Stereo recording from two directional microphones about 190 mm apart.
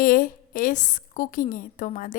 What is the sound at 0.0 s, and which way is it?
A woman's voice, 45° left (ahead or behind).